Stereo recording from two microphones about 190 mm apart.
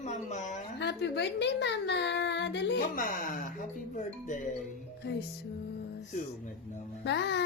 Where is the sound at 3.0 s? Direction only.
45° left (ahead or behind).